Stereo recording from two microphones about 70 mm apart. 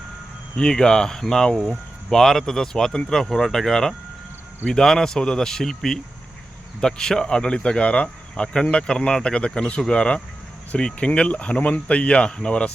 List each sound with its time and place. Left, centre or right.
0.5 s speech: centre